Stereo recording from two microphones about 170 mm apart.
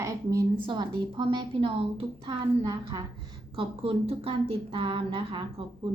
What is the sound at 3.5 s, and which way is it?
Speech, 35° right (ahead or behind).